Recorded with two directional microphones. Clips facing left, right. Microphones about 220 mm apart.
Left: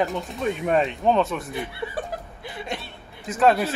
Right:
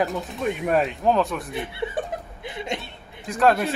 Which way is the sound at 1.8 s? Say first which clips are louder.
Right 3 dB; 15° right (ahead or behind).